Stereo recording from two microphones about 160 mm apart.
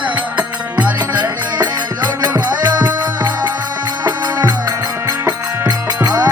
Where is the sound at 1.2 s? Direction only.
25° right (ahead or behind).